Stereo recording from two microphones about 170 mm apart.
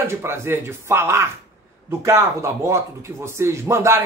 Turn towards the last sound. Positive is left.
turn(degrees=-15)  # may be behind; listen again after turning